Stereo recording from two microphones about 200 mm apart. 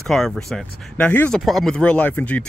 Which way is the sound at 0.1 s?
Centre (ahead or behind).